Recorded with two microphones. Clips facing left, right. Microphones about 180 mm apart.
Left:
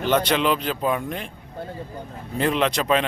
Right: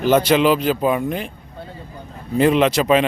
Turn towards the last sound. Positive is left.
turn(degrees=-5)  # may be behind; listen again after turning